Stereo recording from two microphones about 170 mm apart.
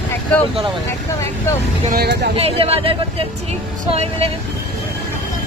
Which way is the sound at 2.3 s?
35° right (ahead or behind).